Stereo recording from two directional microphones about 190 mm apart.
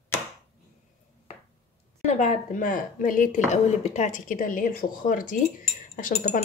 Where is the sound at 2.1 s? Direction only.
40° left (ahead or behind).